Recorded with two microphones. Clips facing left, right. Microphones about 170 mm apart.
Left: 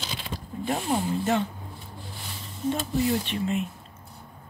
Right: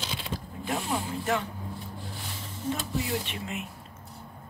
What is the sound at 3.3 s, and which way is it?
Speech, 30° left (ahead or behind).